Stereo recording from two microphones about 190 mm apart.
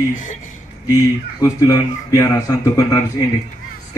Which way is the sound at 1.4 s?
15° left (ahead or behind).